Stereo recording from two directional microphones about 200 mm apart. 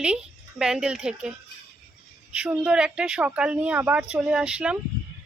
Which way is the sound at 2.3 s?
5° right (ahead or behind).